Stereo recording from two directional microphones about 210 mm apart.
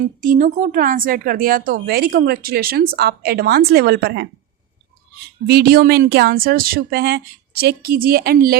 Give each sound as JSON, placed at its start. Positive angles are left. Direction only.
{"t": 0.2, "sound": "speech", "side_deg": -40}
{"t": 5.5, "sound": "speech", "side_deg": -45}